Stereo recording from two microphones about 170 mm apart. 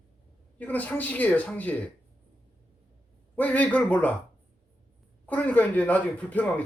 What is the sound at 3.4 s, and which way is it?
Speech, 10° left (ahead or behind).